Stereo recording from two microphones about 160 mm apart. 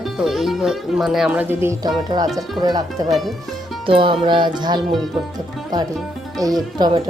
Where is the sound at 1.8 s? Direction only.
25° right (ahead or behind).